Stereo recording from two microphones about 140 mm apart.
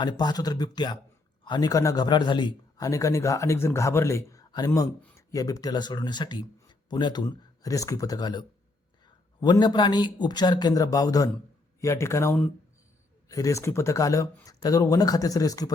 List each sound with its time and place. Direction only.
0.0 s a man's voice: 30° left (ahead or behind)